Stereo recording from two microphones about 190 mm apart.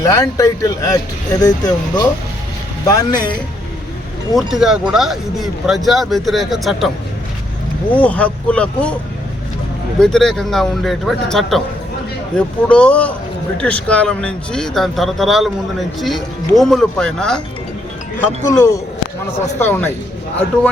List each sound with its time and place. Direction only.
0.0 s speech: 15° left (ahead or behind)
4.4 s speech: centre (ahead or behind)
7.9 s speech: 5° left (ahead or behind)
10.0 s speech: 5° left (ahead or behind)
18.2 s speech: 15° left (ahead or behind)